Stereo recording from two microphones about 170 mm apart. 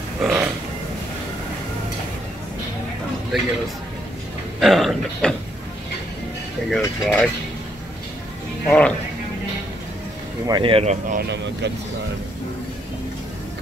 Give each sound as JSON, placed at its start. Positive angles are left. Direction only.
{"t": 0.2, "sound": "burping", "side_deg": -5}
{"t": 4.6, "sound": "speech", "side_deg": 0}
{"t": 6.7, "sound": "mechanisms", "side_deg": 5}
{"t": 8.6, "sound": "mechanisms", "side_deg": 5}
{"t": 10.4, "sound": "speech", "side_deg": -30}
{"t": 11.1, "sound": "speech", "side_deg": -90}